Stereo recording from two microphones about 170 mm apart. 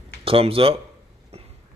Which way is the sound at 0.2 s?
35° right (ahead or behind).